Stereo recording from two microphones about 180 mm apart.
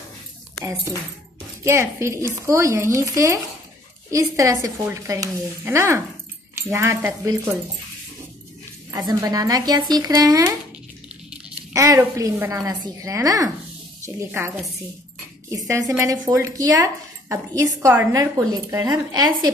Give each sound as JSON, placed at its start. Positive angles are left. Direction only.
{"t": 1.6, "sound": "a woman's voice", "side_deg": -15}
{"t": 8.9, "sound": "speech", "side_deg": -20}
{"t": 11.7, "sound": "a woman's voice", "side_deg": -20}
{"t": 15.9, "sound": "speech", "side_deg": -15}